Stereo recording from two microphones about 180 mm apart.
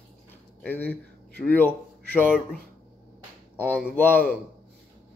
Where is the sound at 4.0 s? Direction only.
10° left (ahead or behind).